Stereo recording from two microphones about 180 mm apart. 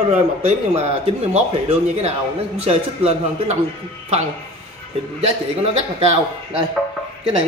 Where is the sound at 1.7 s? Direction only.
35° right (ahead or behind).